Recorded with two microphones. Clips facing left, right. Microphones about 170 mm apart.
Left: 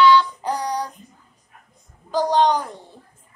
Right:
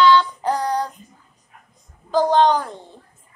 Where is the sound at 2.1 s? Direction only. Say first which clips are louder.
Right 2 dB; 15° left (ahead or behind).